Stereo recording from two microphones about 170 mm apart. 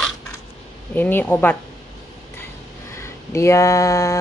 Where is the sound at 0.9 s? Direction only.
10° left (ahead or behind).